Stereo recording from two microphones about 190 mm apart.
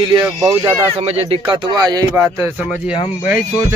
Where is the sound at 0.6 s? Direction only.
10° right (ahead or behind).